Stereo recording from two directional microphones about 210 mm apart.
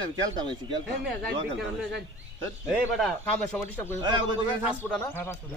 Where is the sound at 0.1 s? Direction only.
20° right (ahead or behind).